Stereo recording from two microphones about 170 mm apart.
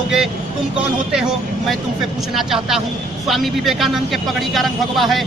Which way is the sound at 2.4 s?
Centre (ahead or behind).